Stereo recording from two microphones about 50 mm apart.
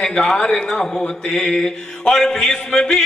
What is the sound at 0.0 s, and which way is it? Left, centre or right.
Mantra, centre.